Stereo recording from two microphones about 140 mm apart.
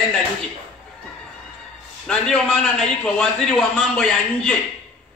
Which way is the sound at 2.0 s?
5° left (ahead or behind).